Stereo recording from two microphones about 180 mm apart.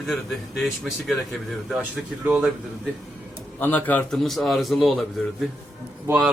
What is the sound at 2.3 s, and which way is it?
Speech, 5° right (ahead or behind).